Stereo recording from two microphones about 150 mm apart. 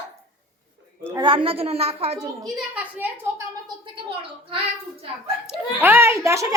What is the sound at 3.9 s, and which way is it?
Speech, 35° right (ahead or behind).